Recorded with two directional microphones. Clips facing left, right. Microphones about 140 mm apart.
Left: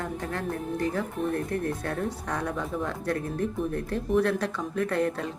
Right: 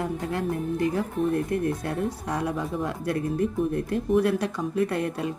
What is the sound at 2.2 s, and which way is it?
A woman's voice, 10° right (ahead or behind).